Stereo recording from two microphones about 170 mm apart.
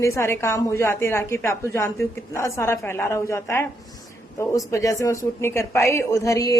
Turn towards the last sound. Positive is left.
turn(degrees=20)  # may be behind; listen again after turning